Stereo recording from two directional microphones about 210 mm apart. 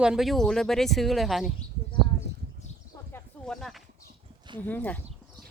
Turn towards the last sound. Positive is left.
turn(degrees=10)  # may be behind; listen again after turning